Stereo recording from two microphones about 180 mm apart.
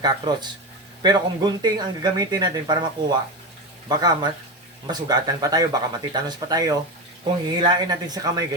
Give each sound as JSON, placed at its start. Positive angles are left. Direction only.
{"t": 0.0, "sound": "speech", "side_deg": -20}